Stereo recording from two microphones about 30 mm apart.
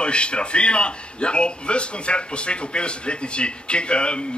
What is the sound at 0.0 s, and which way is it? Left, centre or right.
A man's voice, left.